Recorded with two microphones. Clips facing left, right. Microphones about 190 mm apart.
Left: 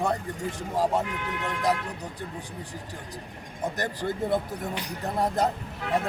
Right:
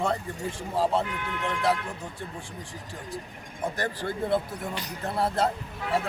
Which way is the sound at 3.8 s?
15° left (ahead or behind).